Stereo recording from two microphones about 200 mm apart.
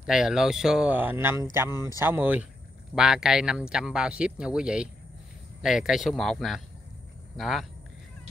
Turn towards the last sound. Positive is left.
turn(degrees=0)  # may be behind; listen again after turning